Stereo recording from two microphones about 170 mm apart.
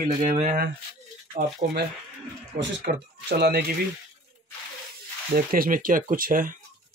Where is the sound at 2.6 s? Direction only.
65° right (ahead or behind).